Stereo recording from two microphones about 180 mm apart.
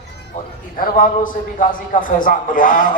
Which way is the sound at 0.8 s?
45° left (ahead or behind).